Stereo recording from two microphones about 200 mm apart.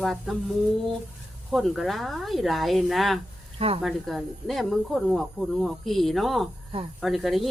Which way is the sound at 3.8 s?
Centre (ahead or behind).